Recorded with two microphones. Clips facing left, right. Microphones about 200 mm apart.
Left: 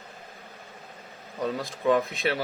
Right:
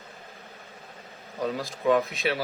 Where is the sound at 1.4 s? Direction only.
Centre (ahead or behind).